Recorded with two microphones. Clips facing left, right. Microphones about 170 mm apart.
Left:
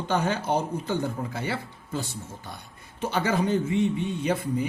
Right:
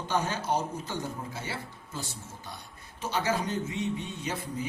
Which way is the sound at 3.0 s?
55° left (ahead or behind).